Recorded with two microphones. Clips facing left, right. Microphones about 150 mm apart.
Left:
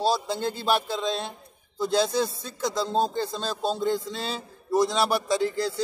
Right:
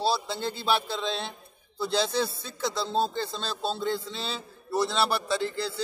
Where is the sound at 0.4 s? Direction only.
45° left (ahead or behind).